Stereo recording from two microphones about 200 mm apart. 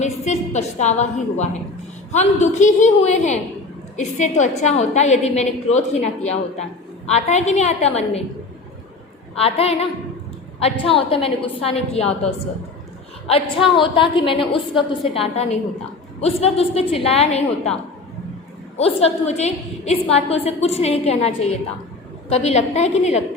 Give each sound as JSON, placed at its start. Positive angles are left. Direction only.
{"t": 0.0, "sound": "a woman's voice", "side_deg": 35}
{"t": 9.4, "sound": "a woman's voice", "side_deg": 30}
{"t": 13.7, "sound": "a woman's voice", "side_deg": 25}
{"t": 18.8, "sound": "a woman's voice", "side_deg": 30}